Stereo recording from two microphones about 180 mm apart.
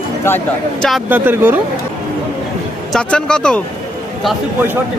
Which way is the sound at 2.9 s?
5° left (ahead or behind).